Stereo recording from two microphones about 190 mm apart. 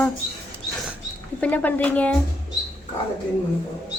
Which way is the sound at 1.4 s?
10° left (ahead or behind).